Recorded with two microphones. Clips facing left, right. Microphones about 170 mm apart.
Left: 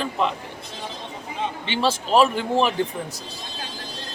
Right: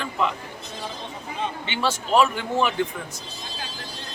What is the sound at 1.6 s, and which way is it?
Speech, 30° left (ahead or behind).